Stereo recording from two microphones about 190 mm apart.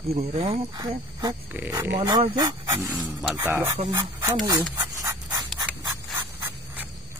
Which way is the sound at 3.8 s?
25° right (ahead or behind).